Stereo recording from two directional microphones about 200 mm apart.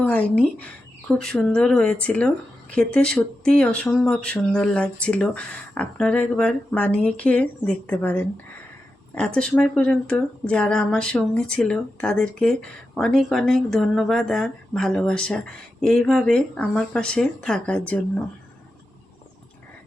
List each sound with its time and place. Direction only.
0.0 s speech: 5° left (ahead or behind)